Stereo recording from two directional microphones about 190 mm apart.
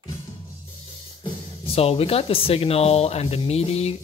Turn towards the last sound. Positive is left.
turn(degrees=35)  # may be behind; listen again after turning